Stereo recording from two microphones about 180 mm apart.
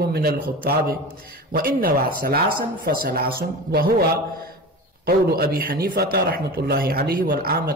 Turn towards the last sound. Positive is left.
turn(degrees=-55)  # may be behind; listen again after turning